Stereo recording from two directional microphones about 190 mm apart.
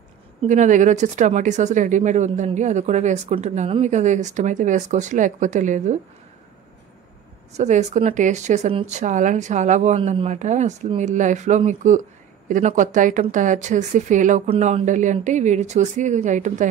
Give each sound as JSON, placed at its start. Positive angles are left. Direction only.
{"t": 0.4, "sound": "speech", "side_deg": -40}
{"t": 7.5, "sound": "speech", "side_deg": -40}